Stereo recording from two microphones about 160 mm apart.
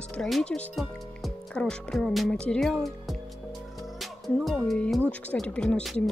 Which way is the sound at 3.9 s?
Centre (ahead or behind).